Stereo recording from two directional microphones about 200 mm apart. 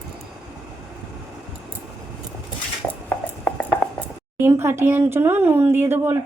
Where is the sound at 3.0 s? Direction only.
5° left (ahead or behind).